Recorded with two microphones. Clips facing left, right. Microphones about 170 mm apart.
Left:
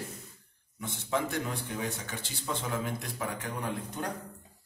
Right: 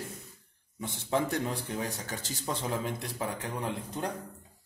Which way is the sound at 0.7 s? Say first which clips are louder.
Right 2 dB; 30° right (ahead or behind).